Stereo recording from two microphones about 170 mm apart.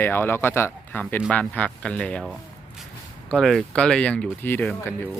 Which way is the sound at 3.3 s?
Centre (ahead or behind).